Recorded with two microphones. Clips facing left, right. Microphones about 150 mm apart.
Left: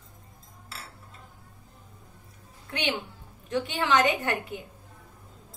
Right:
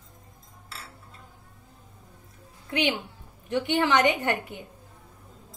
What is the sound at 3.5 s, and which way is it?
Speech, 20° right (ahead or behind).